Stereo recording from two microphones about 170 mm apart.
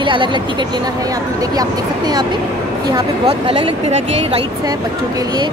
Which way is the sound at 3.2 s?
30° right (ahead or behind).